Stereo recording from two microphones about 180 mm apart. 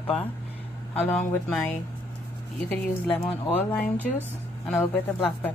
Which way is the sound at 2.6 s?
10° left (ahead or behind).